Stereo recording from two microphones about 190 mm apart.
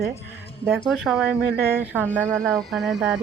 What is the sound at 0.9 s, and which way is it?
Speech, centre (ahead or behind).